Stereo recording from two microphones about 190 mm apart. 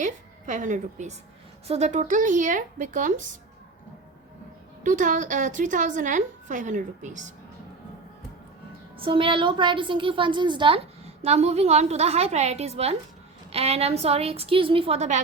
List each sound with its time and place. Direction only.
0.0 s a woman's voice: 40° right (ahead or behind)
4.8 s a woman's voice: 40° right (ahead or behind)
9.0 s a woman's voice: 30° right (ahead or behind)